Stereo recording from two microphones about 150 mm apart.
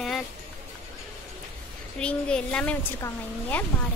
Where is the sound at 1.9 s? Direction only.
5° left (ahead or behind).